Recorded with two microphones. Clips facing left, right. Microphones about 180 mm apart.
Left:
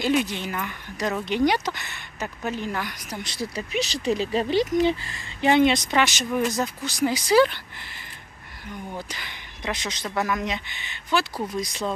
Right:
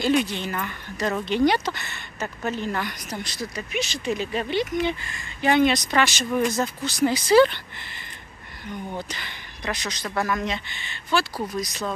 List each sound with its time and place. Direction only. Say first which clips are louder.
0.0 s speech: right 1 dB; 10° left (ahead or behind)
3.3 s speech: left 2 dB; 30° left (ahead or behind)
5.4 s speech: left 1 dB; 25° left (ahead or behind)
9.6 s speech: even; 25° left (ahead or behind)
11.5 s speech: left 2 dB; 25° left (ahead or behind)